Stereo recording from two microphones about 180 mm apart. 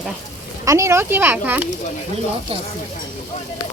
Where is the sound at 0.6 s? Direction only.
15° right (ahead or behind).